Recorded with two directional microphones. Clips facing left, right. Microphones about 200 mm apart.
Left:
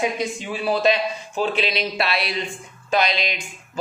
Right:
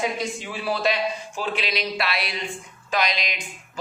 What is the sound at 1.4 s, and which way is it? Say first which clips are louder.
A man's voice: left 5 dB; 25° left (ahead or behind).